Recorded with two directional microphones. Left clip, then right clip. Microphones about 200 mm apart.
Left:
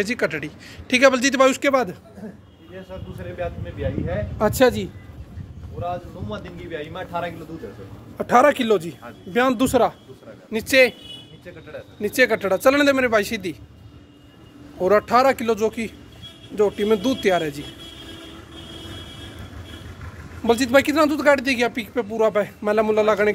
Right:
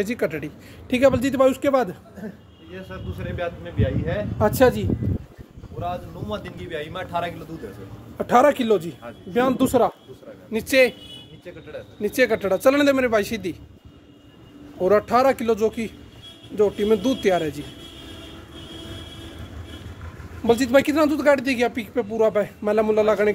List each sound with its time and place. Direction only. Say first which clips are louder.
0.0 s speech: left 2 dB; 5° right (ahead or behind)
4.4 s speech: even; centre (ahead or behind)
5.8 s speech: left 1 dB; 60° right (ahead or behind)
8.2 s speech: left 1 dB; centre (ahead or behind)
12.0 s speech: left 2 dB; centre (ahead or behind)
14.8 s speech: left 1 dB; 5° right (ahead or behind)
20.4 s speech: left 1 dB; 5° right (ahead or behind)